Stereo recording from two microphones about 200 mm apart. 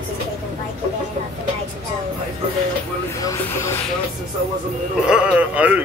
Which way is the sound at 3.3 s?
15° left (ahead or behind).